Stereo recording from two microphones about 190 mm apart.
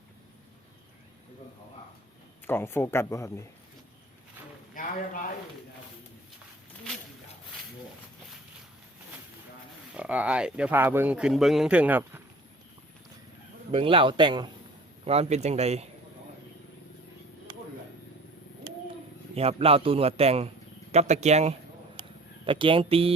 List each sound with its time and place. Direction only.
2.5 s speech: 10° left (ahead or behind)
4.7 s speech: 45° left (ahead or behind)
9.9 s speech: 5° right (ahead or behind)
13.7 s a man's voice: 30° right (ahead or behind)
17.5 s a sound: 25° right (ahead or behind)
18.7 s a sound: 25° right (ahead or behind)
19.3 s a man's voice: 30° right (ahead or behind)
22.0 s a sound: 25° right (ahead or behind)
22.4 s a man's voice: 25° right (ahead or behind)